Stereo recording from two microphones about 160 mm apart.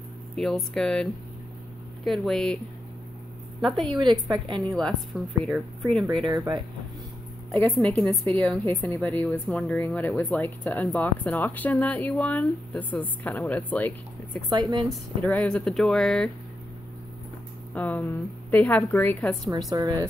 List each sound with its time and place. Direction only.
0.4 s speech: centre (ahead or behind)
3.6 s speech: centre (ahead or behind)
3.9 s a woman's voice: 30° right (ahead or behind)
4.7 s speech: centre (ahead or behind)
6.2 s a woman's voice: 20° right (ahead or behind)
7.6 s speech: 5° left (ahead or behind)
14.5 s a woman's voice: 30° right (ahead or behind)
14.9 s speech: 5° left (ahead or behind)
17.7 s speech: 10° left (ahead or behind)
19.7 s a woman's voice: 25° right (ahead or behind)